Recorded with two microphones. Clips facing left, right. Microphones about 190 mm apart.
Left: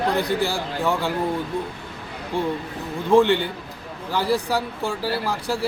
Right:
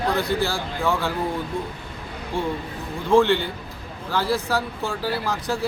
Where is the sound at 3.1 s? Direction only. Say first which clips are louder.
Left 1 dB; 15° left (ahead or behind).